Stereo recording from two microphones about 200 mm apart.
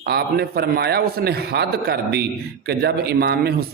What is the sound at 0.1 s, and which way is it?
A man's voice, 55° right (ahead or behind).